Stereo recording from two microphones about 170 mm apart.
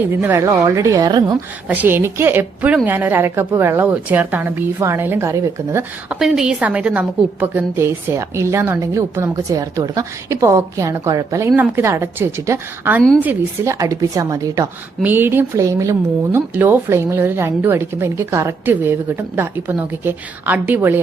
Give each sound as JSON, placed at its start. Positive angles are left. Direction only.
{"t": 0.1, "sound": "a woman's voice", "side_deg": -15}
{"t": 1.6, "sound": "a woman's voice", "side_deg": -10}
{"t": 6.1, "sound": "a woman's voice", "side_deg": -5}